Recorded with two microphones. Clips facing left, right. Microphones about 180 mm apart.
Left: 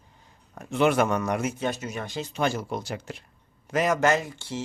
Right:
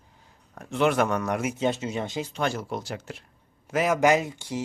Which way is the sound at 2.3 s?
5° left (ahead or behind).